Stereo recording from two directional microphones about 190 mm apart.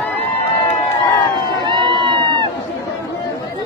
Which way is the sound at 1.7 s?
25° right (ahead or behind).